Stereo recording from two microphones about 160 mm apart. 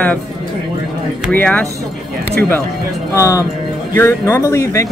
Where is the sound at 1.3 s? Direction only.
10° left (ahead or behind).